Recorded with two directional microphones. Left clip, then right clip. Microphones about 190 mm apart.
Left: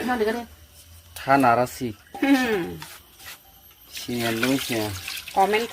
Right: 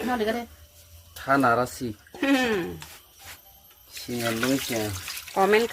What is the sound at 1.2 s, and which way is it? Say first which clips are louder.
Speech: left 3 dB; 5° left (ahead or behind).